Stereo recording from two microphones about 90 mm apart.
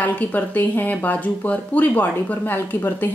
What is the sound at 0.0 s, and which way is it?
A woman's voice, 20° left (ahead or behind).